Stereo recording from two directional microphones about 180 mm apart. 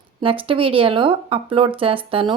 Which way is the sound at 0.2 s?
30° right (ahead or behind).